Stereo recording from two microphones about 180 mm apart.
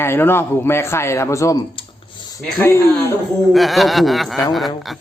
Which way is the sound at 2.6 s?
15° left (ahead or behind).